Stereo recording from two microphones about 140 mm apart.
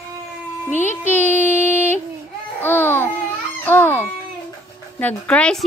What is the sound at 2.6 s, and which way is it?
Babbling, 15° left (ahead or behind).